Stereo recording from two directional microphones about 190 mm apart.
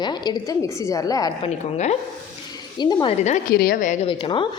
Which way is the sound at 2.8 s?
25° left (ahead or behind).